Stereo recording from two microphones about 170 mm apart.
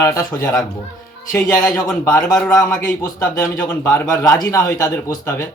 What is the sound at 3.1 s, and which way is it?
A man's voice, 15° left (ahead or behind).